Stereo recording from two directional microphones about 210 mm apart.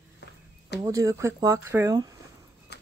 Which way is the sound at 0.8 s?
15° right (ahead or behind).